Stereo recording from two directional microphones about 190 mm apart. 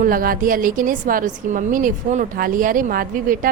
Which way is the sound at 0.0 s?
50° right (ahead or behind).